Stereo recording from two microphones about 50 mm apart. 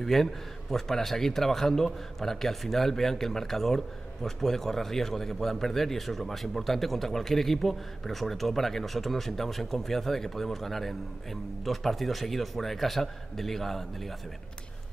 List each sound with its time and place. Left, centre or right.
0.0 s speech: centre